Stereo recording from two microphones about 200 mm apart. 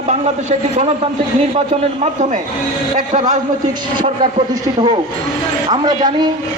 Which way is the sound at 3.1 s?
35° right (ahead or behind).